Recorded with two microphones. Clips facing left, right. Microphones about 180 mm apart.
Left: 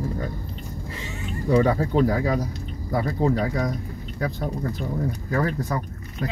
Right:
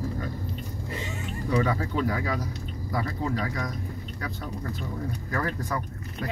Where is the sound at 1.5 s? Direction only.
35° left (ahead or behind).